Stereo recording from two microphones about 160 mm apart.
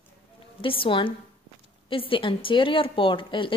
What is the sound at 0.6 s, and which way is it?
Speech, 35° left (ahead or behind).